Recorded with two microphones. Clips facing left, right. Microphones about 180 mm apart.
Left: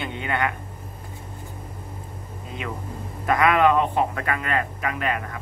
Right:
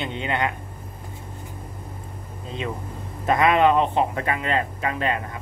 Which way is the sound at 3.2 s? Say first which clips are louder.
Right 1 dB; 25° right (ahead or behind).